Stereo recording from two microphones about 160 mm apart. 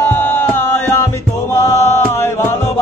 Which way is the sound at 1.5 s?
20° left (ahead or behind).